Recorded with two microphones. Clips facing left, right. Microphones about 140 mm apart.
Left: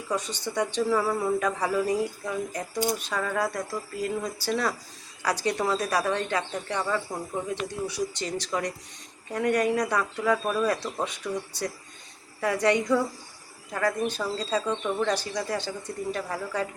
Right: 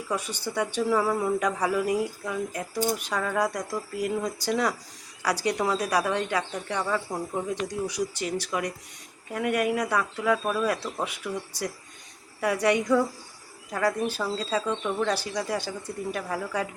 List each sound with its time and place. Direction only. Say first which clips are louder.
0.1 s speech: left 1 dB; 10° right (ahead or behind)